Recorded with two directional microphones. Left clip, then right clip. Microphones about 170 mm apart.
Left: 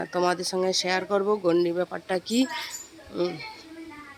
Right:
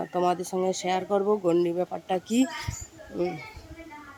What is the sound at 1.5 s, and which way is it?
Speech, 10° right (ahead or behind).